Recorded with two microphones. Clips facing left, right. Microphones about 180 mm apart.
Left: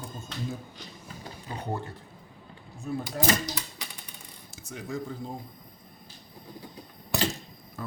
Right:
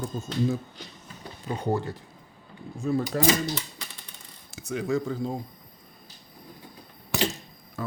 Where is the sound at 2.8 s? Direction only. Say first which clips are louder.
Right 6 dB; 90° right.